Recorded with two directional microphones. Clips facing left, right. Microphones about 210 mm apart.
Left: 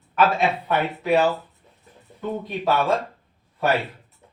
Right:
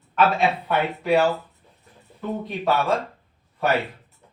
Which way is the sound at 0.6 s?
Centre (ahead or behind).